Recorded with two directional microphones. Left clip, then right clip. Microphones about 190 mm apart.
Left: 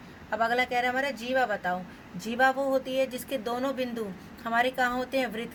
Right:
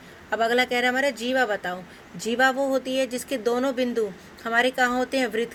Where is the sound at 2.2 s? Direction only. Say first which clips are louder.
Right 3 dB; 50° right (ahead or behind).